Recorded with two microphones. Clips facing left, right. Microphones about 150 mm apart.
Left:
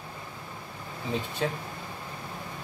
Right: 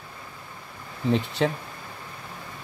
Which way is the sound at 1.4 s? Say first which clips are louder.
Right 5 dB; 70° right (ahead or behind).